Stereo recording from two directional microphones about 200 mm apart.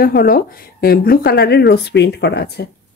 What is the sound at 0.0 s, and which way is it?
A woman's voice, 50° left (ahead or behind).